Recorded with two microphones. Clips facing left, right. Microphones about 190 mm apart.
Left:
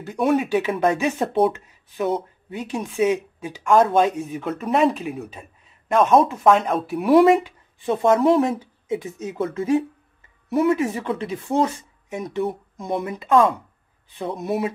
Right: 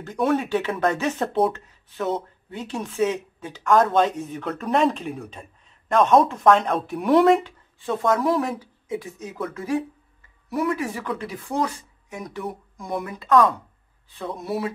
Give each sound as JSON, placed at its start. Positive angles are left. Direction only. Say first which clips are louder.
{"t": 0.0, "sound": "speech", "louder": "left 2 dB", "side_deg": 10}
{"t": 7.8, "sound": "speech", "louder": "left 4 dB", "side_deg": 20}